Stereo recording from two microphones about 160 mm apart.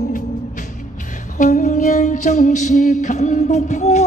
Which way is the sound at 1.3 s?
55° left (ahead or behind).